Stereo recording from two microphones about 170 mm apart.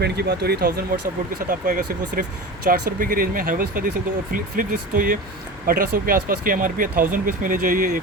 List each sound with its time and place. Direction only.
0.0 s speech: 70° right (ahead or behind)
1.5 s speech: 50° right (ahead or behind)